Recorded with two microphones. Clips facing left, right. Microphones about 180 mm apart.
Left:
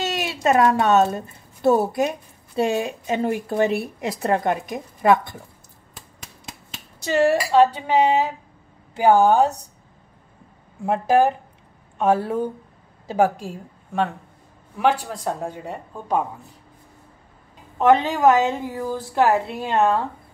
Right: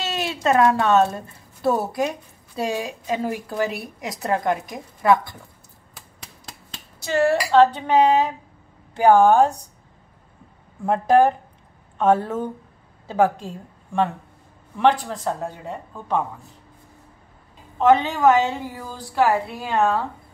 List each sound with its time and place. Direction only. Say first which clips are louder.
0.1 s a woman's voice: right 1 dB; 15° left (ahead or behind)
7.1 s speech: left 1 dB; 10° left (ahead or behind)
10.9 s a woman's voice: right 1 dB; 5° left (ahead or behind)
17.7 s a woman's voice: even; 20° left (ahead or behind)